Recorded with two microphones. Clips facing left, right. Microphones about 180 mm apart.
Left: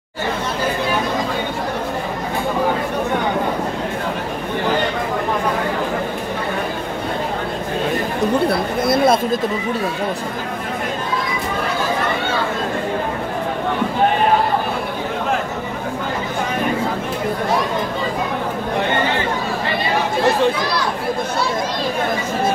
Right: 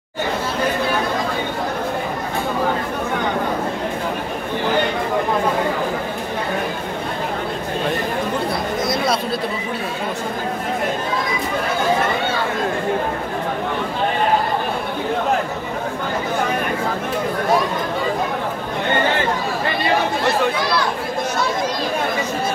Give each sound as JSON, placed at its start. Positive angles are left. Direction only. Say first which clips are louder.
{"t": 8.8, "sound": "speech", "louder": "left 8 dB", "side_deg": 55}